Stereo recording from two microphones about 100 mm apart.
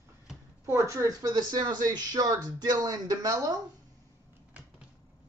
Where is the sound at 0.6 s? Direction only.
30° right (ahead or behind).